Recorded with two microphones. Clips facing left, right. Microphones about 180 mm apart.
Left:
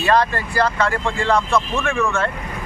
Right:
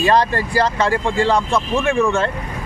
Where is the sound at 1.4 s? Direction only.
15° right (ahead or behind).